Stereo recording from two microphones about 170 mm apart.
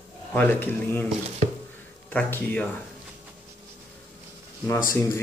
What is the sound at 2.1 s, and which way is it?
Speech, 10° left (ahead or behind).